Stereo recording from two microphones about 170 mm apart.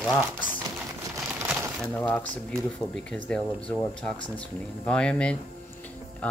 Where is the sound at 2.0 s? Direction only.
10° left (ahead or behind).